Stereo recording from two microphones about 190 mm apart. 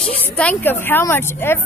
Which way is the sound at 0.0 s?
5° left (ahead or behind).